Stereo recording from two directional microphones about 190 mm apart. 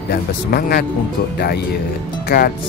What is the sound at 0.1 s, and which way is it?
Speech, 55° left (ahead or behind).